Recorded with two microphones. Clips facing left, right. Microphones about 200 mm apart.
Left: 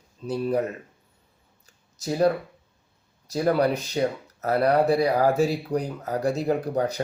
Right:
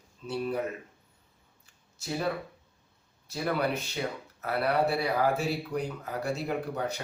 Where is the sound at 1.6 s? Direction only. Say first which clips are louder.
Left 8 dB; 40° left (ahead or behind).